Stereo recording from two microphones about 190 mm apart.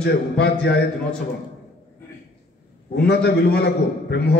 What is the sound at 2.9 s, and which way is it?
A man's voice, 60° left (ahead or behind).